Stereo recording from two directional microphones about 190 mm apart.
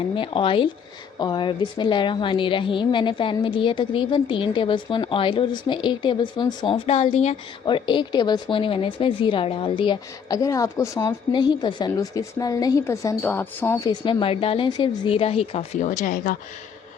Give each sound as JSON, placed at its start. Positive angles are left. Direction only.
{"t": 0.2, "sound": "a woman's voice", "side_deg": 25}
{"t": 14.0, "sound": "speech", "side_deg": 25}